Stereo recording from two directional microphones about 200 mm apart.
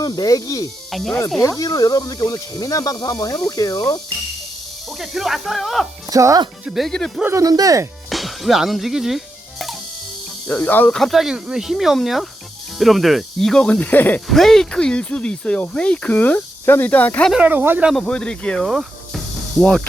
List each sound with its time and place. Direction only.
0.0 s speech: 20° left (ahead or behind)
0.9 s speech: centre (ahead or behind)
1.4 s speech: 15° left (ahead or behind)
4.9 s speech: centre (ahead or behind)
6.1 s speech: 15° right (ahead or behind)
6.7 s speech: centre (ahead or behind)
7.3 s speech: 15° right (ahead or behind)
8.1 s speech: centre (ahead or behind)
17.3 s speech: 10° right (ahead or behind)